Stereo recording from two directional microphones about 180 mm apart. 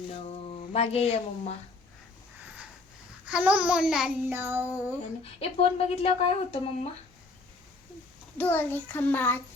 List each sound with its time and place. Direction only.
0.4 s speech: 35° left (ahead or behind)
3.2 s child singing: 5° right (ahead or behind)
5.2 s speech: 35° left (ahead or behind)
8.4 s a child's voice: 10° left (ahead or behind)